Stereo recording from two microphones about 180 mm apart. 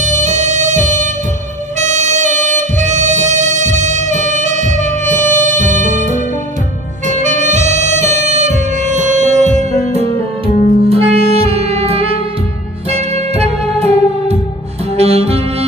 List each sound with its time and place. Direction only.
0.0 s music: 40° right (ahead or behind)
7.1 s music: 45° right (ahead or behind)
15.0 s saxophone: 35° right (ahead or behind)